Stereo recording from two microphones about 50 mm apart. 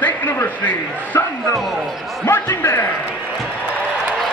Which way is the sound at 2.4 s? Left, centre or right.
Left.